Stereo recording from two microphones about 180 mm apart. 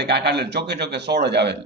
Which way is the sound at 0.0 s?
65° right (ahead or behind).